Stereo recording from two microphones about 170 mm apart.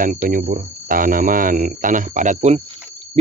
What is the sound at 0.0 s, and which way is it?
Speech, 55° right (ahead or behind).